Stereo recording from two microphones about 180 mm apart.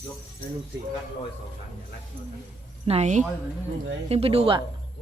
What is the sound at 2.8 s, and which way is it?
Speech, 35° right (ahead or behind).